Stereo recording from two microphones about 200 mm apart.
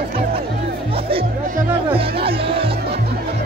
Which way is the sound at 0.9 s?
25° right (ahead or behind).